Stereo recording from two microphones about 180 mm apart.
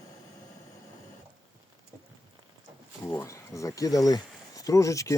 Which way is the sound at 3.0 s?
15° left (ahead or behind).